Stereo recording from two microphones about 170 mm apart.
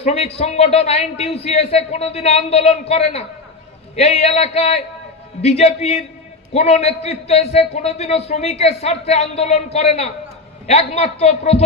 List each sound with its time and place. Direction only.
0.0 s a man's voice: 35° left (ahead or behind)